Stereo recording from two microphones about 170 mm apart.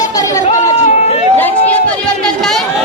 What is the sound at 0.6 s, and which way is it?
Chatter, 40° left (ahead or behind).